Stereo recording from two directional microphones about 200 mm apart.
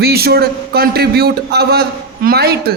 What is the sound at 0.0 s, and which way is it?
A man's voice, 50° right (ahead or behind).